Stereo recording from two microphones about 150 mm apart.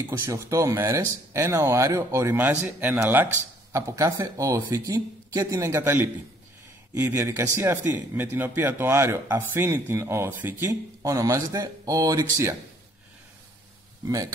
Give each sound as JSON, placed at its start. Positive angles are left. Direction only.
{"t": 0.1, "sound": "a man's voice", "side_deg": -20}
{"t": 14.0, "sound": "speech", "side_deg": -25}